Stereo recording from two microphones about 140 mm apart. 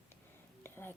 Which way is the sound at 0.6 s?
15° left (ahead or behind).